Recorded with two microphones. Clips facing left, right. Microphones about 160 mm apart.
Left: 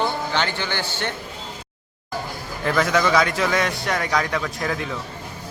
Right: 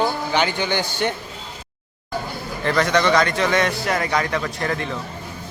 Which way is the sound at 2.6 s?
5° left (ahead or behind).